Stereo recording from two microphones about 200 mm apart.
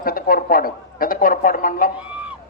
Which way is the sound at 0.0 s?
45° left (ahead or behind).